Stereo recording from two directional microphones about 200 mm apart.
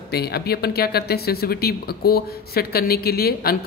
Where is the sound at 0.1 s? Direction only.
55° left (ahead or behind).